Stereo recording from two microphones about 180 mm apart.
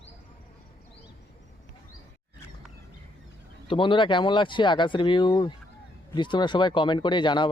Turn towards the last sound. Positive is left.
turn(degrees=25)  # may be behind; listen again after turning